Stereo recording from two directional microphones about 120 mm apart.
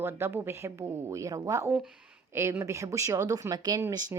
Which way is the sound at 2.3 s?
20° right (ahead or behind).